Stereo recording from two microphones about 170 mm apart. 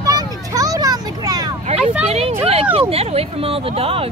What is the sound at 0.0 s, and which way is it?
Vehicle, 20° right (ahead or behind).